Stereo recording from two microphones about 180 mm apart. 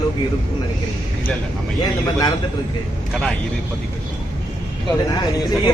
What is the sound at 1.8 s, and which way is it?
Speech, 25° left (ahead or behind).